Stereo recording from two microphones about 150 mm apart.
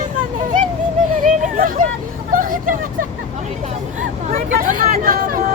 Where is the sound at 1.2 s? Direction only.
65° right (ahead or behind).